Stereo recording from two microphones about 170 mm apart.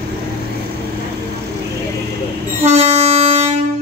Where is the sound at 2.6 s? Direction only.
40° right (ahead or behind).